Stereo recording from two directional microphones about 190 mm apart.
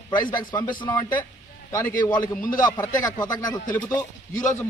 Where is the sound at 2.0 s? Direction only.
20° left (ahead or behind).